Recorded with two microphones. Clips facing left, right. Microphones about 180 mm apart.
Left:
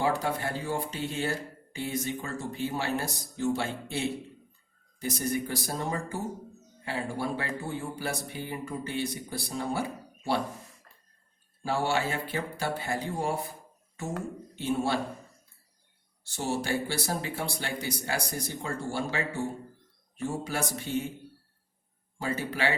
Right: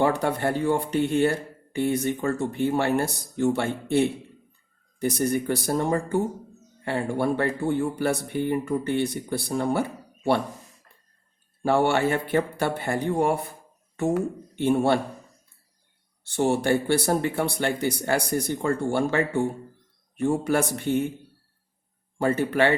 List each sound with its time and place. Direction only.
0.0 s speech: 60° right (ahead or behind)
11.6 s speech: 60° right (ahead or behind)
14.5 s speech: 60° right (ahead or behind)
16.2 s speech: 60° right (ahead or behind)
22.2 s speech: 60° right (ahead or behind)